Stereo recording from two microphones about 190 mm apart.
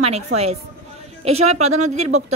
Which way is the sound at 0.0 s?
35° right (ahead or behind).